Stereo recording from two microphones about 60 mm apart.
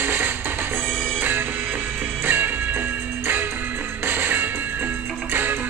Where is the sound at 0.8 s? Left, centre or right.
Centre.